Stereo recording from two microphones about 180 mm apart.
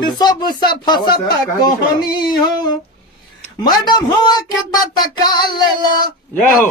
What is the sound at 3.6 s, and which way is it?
Speech, 20° left (ahead or behind).